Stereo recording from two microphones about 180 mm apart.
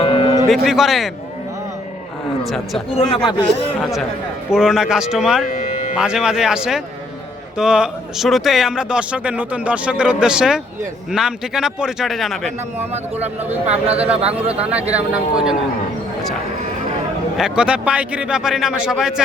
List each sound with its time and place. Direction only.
0.0 s cattle: 30° left (ahead or behind)
0.4 s speech: centre (ahead or behind)
2.4 s a man's voice: centre (ahead or behind)
2.9 s speech: 30° left (ahead or behind)
3.8 s speech: centre (ahead or behind)
5.5 s music: 40° left (ahead or behind)
6.0 s speech: 5° right (ahead or behind)
13.8 s speech: 35° right (ahead or behind)
14.6 s speech: 5° right (ahead or behind)
17.3 s speech: 5° right (ahead or behind)